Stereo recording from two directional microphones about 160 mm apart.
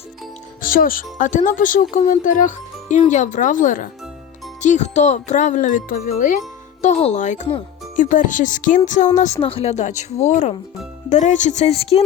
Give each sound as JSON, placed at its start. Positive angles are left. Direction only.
{"t": 0.6, "sound": "speech", "side_deg": 60}
{"t": 6.8, "sound": "speech", "side_deg": 45}
{"t": 9.4, "sound": "speech", "side_deg": 35}